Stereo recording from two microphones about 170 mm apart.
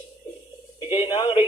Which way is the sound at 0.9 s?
30° left (ahead or behind).